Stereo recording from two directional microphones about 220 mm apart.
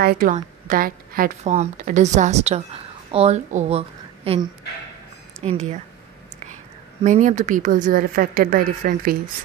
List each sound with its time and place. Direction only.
0.0 s a woman's voice: 40° right (ahead or behind)
7.0 s a woman's voice: 35° right (ahead or behind)